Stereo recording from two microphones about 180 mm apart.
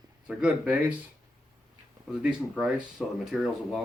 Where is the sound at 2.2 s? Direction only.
5° right (ahead or behind).